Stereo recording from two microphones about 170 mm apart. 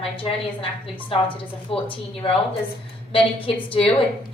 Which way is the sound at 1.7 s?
35° left (ahead or behind).